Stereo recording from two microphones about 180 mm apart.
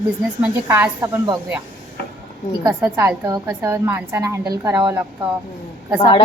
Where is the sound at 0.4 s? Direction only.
15° right (ahead or behind).